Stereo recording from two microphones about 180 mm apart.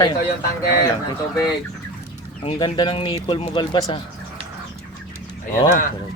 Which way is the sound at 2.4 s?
30° left (ahead or behind).